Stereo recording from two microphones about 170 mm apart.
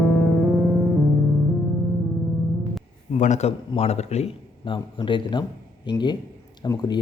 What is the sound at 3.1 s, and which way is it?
A man's voice, 45° left (ahead or behind).